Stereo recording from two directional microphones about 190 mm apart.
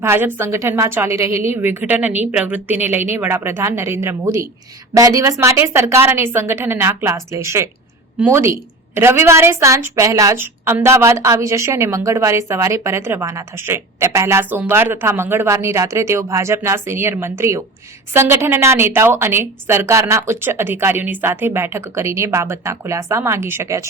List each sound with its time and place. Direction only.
0.0 s a woman's voice: 10° right (ahead or behind)